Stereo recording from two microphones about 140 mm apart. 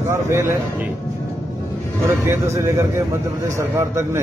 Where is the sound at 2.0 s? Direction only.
20° right (ahead or behind).